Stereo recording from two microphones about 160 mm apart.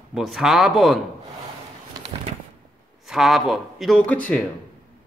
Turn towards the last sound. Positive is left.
turn(degrees=10)  # may be behind; listen again after turning